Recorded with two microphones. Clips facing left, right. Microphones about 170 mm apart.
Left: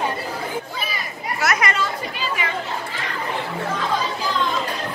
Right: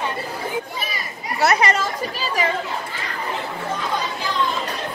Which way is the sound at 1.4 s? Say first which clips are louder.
Right 4 dB; 30° right (ahead or behind).